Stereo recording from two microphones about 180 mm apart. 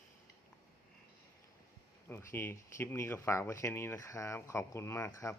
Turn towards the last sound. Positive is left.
turn(degrees=15)  # may be behind; listen again after turning